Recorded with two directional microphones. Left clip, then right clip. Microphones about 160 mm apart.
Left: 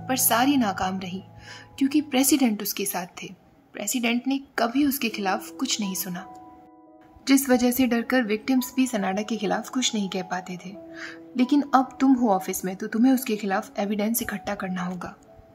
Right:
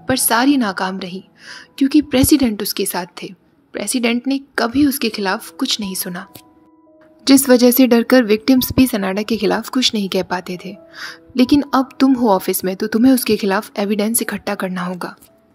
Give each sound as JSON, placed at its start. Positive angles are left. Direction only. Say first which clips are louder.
{"t": 0.0, "sound": "a woman's voice", "louder": "right 7 dB", "side_deg": -20}
{"t": 7.2, "sound": "a woman's voice", "louder": "right 10 dB", "side_deg": -25}
{"t": 13.0, "sound": "a woman's voice", "louder": "right 8 dB", "side_deg": -35}